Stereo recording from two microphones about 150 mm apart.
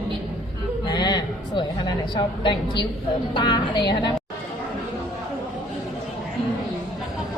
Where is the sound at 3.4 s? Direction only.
30° left (ahead or behind).